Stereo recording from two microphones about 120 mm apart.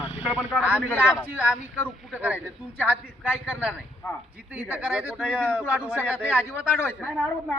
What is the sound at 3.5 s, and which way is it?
Speech, 10° right (ahead or behind).